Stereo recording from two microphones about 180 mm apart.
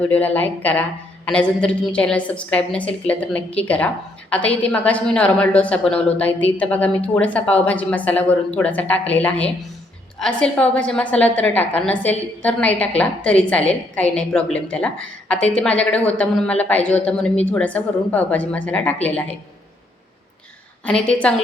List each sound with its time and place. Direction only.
0.1 s a woman's voice: 10° left (ahead or behind)
20.8 s a woman's voice: 5° left (ahead or behind)